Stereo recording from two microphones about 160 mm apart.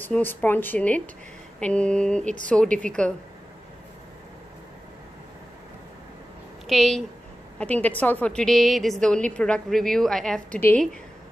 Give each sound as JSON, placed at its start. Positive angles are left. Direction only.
{"t": 0.0, "sound": "a woman's voice", "side_deg": 10}
{"t": 6.7, "sound": "a woman's voice", "side_deg": 0}